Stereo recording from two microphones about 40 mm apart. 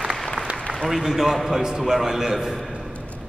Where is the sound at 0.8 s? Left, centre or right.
Centre.